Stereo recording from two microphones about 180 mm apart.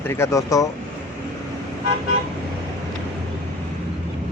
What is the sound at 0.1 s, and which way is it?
Speech, 15° left (ahead or behind).